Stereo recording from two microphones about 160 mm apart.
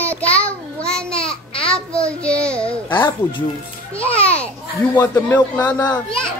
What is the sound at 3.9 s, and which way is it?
Speech, 10° left (ahead or behind).